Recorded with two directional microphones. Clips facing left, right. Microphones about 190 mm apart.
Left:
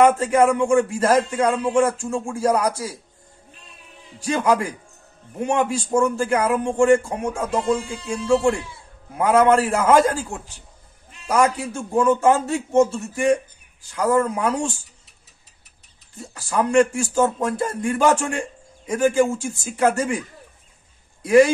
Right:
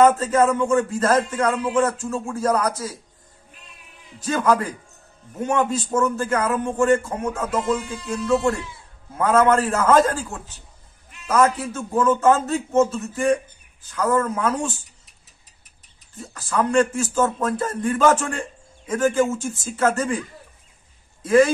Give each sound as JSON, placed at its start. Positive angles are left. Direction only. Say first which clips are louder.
{"t": 0.0, "sound": "a man's voice", "louder": "left 1 dB", "side_deg": 15}
{"t": 5.6, "sound": "a man's voice", "louder": "left 2 dB", "side_deg": 15}
{"t": 7.6, "sound": "music", "louder": "left 1 dB", "side_deg": 30}
{"t": 9.1, "sound": "a man's voice", "louder": "left 1 dB", "side_deg": 15}
{"t": 16.5, "sound": "a man's voice", "louder": "left 2 dB", "side_deg": 15}